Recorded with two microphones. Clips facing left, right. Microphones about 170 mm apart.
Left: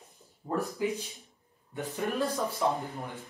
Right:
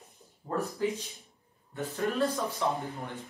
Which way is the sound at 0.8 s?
10° left (ahead or behind).